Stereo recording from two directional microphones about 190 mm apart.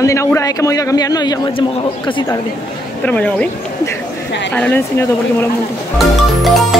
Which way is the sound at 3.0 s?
5° left (ahead or behind).